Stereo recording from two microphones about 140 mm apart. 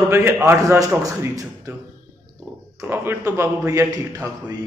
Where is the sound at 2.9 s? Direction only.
15° right (ahead or behind).